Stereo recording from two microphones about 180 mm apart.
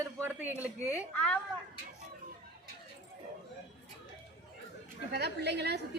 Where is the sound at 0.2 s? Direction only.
10° right (ahead or behind).